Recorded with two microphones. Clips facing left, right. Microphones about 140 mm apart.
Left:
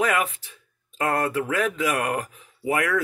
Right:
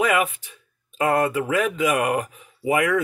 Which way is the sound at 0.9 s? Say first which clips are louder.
Right 3 dB; 10° right (ahead or behind).